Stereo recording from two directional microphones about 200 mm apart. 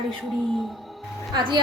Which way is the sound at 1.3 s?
20° right (ahead or behind).